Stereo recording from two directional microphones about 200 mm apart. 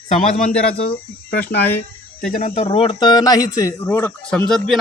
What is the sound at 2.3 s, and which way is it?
Speech, 35° left (ahead or behind).